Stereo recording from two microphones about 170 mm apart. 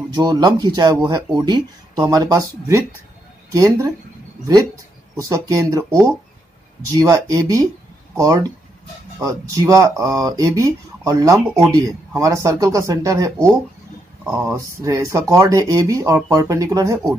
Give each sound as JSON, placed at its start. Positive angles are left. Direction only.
{"t": 0.1, "sound": "speech", "side_deg": -25}
{"t": 5.1, "sound": "speech", "side_deg": -20}